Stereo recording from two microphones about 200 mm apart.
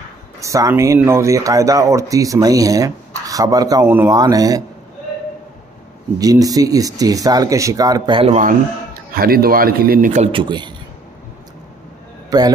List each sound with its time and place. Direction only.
0.4 s speech: 15° right (ahead or behind)
6.1 s speech: 20° right (ahead or behind); by 8.5 s 35° right (ahead or behind)
9.1 s a man's voice: 50° right (ahead or behind)
10.3 s a man's voice: 25° right (ahead or behind)
12.3 s a man's voice: 20° right (ahead or behind)